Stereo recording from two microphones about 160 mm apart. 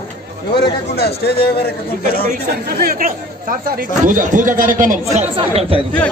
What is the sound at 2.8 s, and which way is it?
Speech, 60° right (ahead or behind).